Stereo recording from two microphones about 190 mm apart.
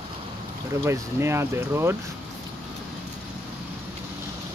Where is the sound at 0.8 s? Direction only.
15° right (ahead or behind).